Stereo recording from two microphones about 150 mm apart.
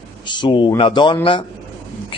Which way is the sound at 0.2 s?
30° left (ahead or behind).